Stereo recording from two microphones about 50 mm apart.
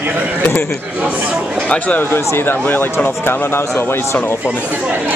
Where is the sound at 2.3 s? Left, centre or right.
Left.